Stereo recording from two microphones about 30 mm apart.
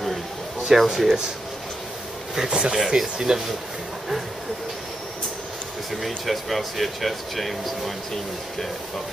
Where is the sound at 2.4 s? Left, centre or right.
Right.